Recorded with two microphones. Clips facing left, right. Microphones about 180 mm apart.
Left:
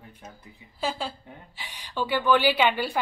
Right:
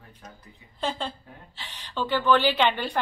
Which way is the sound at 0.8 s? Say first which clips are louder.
Even; 10° left (ahead or behind).